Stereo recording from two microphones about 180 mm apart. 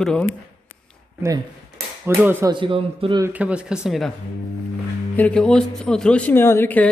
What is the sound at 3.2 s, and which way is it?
Speech, 5° right (ahead or behind).